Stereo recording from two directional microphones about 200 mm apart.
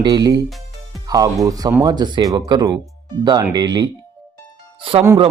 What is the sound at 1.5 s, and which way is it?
A man's voice, 15° right (ahead or behind).